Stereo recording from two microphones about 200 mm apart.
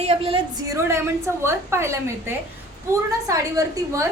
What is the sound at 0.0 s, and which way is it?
Speech, 30° right (ahead or behind).